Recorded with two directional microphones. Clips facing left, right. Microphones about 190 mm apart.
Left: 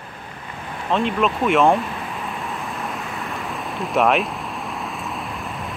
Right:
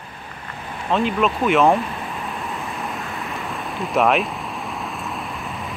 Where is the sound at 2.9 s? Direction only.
Centre (ahead or behind).